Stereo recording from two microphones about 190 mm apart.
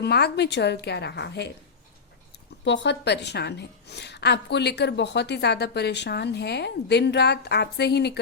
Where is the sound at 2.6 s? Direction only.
65° left (ahead or behind).